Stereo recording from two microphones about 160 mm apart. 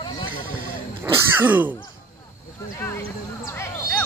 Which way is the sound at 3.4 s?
15° left (ahead or behind).